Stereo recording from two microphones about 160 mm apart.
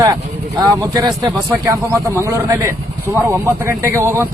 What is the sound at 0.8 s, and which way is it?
A man's voice, 25° right (ahead or behind).